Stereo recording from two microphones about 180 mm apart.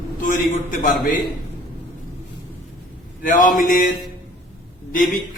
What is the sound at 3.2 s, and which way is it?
Speech, 50° left (ahead or behind).